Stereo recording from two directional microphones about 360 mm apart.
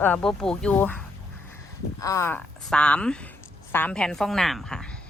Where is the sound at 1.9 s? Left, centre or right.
Centre.